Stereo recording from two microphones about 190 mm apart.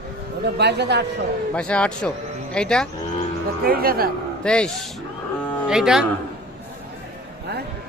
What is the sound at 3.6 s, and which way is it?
Speech, 50° right (ahead or behind).